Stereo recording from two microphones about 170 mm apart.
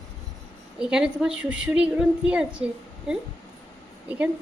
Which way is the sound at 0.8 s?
5° right (ahead or behind).